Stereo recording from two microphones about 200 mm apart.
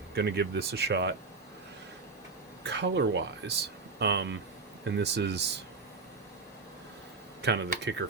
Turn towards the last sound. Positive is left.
turn(degrees=-55)  # may be behind; listen again after turning